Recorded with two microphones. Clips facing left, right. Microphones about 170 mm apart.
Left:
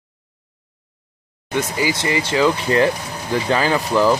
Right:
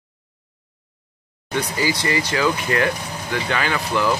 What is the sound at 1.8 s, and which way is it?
Speech, 20° left (ahead or behind).